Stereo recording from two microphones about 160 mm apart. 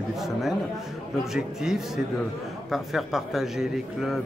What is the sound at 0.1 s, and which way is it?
Speech, centre (ahead or behind).